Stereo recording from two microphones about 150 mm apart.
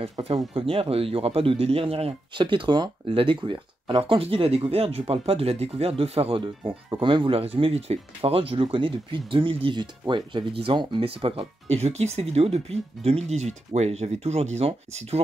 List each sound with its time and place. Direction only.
0.2 s speech: 40° right (ahead or behind)